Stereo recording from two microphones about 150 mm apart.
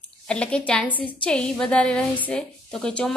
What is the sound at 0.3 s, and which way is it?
A woman's voice, 5° left (ahead or behind).